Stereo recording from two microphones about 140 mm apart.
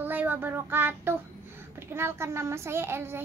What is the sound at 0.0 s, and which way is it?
A child's voice, 15° right (ahead or behind).